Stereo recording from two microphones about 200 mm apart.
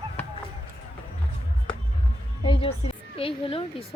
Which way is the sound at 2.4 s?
25° left (ahead or behind).